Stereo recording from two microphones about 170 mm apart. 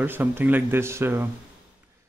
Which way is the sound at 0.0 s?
10° right (ahead or behind).